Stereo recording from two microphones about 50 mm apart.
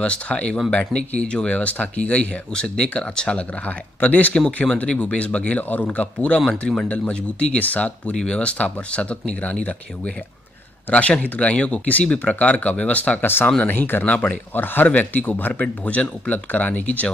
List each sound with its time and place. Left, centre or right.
0.0 s speech: left
13.2 s speech: left
14.1 s speech: left
14.5 s speech: left
15.6 s speech: left